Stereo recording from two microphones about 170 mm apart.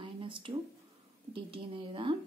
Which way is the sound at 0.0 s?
30° right (ahead or behind).